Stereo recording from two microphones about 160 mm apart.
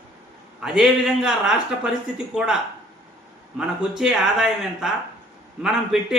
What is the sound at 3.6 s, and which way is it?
A man's voice, 5° right (ahead or behind).